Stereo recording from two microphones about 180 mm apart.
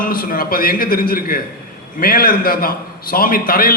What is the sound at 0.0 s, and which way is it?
A man's voice, 55° left (ahead or behind).